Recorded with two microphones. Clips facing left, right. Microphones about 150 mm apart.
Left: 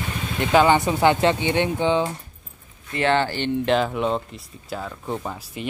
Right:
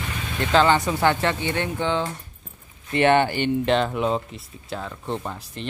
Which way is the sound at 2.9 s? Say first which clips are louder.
Right 3 dB; 20° right (ahead or behind).